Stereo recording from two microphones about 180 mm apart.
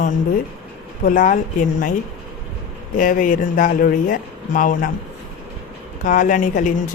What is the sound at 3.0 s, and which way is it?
Speech, 45° left (ahead or behind).